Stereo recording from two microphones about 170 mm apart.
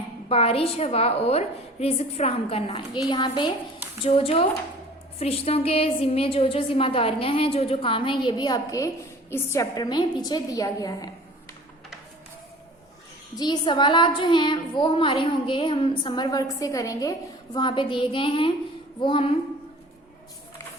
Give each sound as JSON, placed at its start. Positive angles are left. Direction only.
{"t": 0.3, "sound": "a woman's voice", "side_deg": 35}
{"t": 13.3, "sound": "a woman's voice", "side_deg": 25}